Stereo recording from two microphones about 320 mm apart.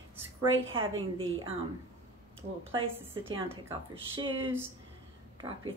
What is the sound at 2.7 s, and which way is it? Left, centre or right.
A woman's voice, centre.